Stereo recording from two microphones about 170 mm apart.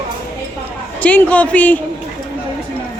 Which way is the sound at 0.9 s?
10° left (ahead or behind).